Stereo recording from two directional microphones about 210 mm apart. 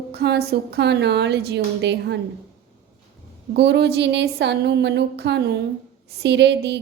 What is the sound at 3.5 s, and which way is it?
A woman's voice, 55° right (ahead or behind).